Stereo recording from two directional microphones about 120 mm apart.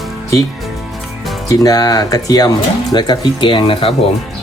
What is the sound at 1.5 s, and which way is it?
Speech, 30° left (ahead or behind).